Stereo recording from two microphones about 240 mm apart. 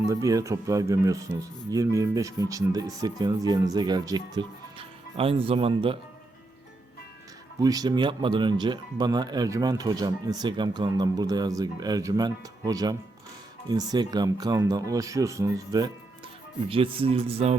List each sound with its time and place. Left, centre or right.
0.1 s speech: centre
7.6 s speech: centre